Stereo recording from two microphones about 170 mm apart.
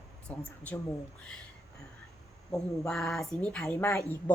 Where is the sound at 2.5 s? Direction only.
Centre (ahead or behind).